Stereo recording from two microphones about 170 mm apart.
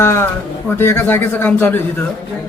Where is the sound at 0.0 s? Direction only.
15° left (ahead or behind).